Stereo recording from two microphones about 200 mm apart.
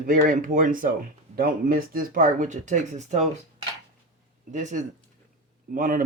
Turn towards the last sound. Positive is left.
turn(degrees=-40)  # may be behind; listen again after turning